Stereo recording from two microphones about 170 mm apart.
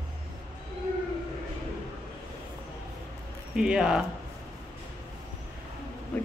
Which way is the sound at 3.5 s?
5° right (ahead or behind).